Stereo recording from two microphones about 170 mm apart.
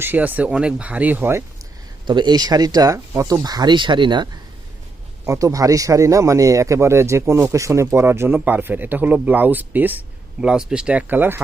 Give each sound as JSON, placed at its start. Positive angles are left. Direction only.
{"t": 0.0, "sound": "speech", "side_deg": -10}
{"t": 2.0, "sound": "speech", "side_deg": -25}